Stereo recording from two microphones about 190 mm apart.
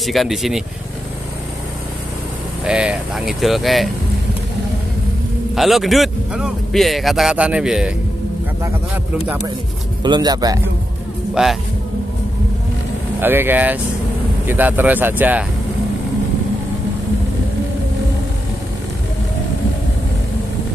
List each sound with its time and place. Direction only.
0.0 s a man's voice: centre (ahead or behind)
2.6 s a man's voice: 5° right (ahead or behind)
5.5 s a man's voice: centre (ahead or behind)
10.0 s speech: 20° right (ahead or behind)
11.4 s a man's voice: 5° right (ahead or behind)
13.2 s speech: 10° right (ahead or behind)